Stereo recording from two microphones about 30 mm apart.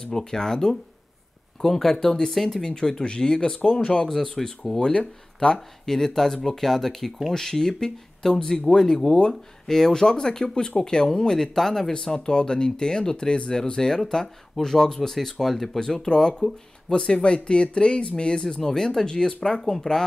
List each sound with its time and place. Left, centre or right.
0.0 s speech: left
2.7 s speech: left
4.8 s speech: left
5.9 s speech: centre
11.5 s speech: centre
11.9 s speech: left
15.8 s speech: left
18.6 s speech: centre
19.6 s speech: centre